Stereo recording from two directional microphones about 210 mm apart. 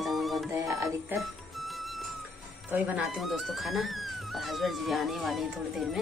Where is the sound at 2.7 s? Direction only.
5° right (ahead or behind).